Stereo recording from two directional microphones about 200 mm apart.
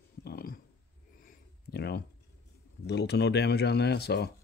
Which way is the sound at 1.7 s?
55° left (ahead or behind).